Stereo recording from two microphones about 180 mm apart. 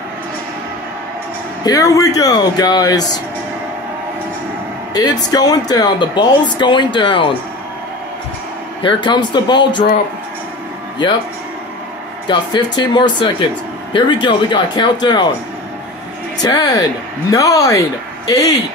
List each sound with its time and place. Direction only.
1.6 s speech: 20° left (ahead or behind)
4.9 s speech: 20° left (ahead or behind)
8.8 s speech: 25° left (ahead or behind)
12.7 s speech: 25° left (ahead or behind)
16.3 s speech: 20° left (ahead or behind)